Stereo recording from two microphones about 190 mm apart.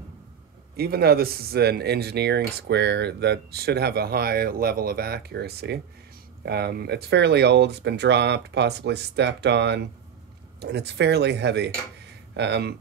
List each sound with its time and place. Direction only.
0.7 s speech: 55° right (ahead or behind)